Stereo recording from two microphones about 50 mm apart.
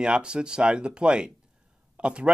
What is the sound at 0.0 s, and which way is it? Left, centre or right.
Speech, centre.